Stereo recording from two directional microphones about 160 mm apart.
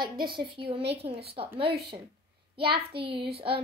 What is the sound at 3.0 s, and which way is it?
Speech, 35° right (ahead or behind).